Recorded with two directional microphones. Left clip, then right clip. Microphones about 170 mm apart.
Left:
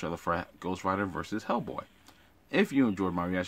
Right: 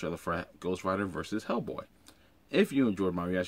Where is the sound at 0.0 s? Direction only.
20° left (ahead or behind).